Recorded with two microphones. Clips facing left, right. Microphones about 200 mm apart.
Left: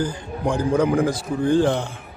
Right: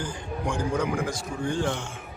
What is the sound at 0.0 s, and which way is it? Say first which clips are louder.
Speech: left 7 dB; 35° left (ahead or behind).